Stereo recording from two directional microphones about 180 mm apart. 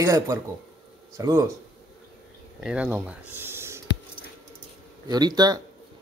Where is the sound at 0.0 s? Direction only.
15° right (ahead or behind).